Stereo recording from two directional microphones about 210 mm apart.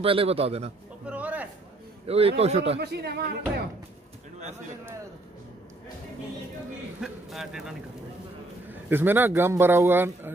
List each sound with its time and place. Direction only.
0.0 s speech: 25° right (ahead or behind)
1.0 s a man's voice: 5° right (ahead or behind)
2.0 s speech: 30° right (ahead or behind)
2.8 s speech: 50° right (ahead or behind)
7.0 s a man's voice: centre (ahead or behind)
8.8 s speech: 10° right (ahead or behind)